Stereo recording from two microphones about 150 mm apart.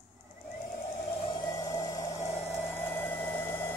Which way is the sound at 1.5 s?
20° left (ahead or behind).